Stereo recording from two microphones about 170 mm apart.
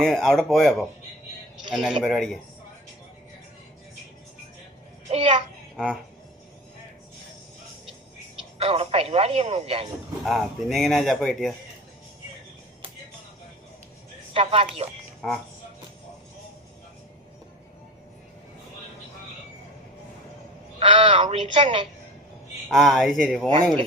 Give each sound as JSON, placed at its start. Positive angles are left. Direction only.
{"t": 0.0, "sound": "speech", "side_deg": 5}
{"t": 5.0, "sound": "speech", "side_deg": -35}
{"t": 5.7, "sound": "speech", "side_deg": -5}
{"t": 8.5, "sound": "speech", "side_deg": -35}
{"t": 10.2, "sound": "speech", "side_deg": 0}
{"t": 14.3, "sound": "speech", "side_deg": -35}
{"t": 15.2, "sound": "speech", "side_deg": 0}
{"t": 20.7, "sound": "speech", "side_deg": -30}
{"t": 22.7, "sound": "speech", "side_deg": 0}